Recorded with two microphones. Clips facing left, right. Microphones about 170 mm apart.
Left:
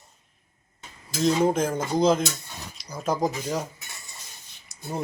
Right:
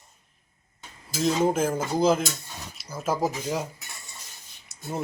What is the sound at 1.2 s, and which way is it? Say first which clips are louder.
Speech: left 1 dB; centre (ahead or behind).